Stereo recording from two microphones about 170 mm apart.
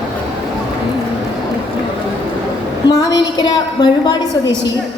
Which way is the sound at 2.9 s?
25° left (ahead or behind).